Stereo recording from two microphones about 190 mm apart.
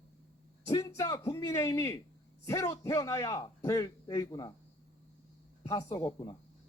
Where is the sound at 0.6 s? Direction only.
15° left (ahead or behind).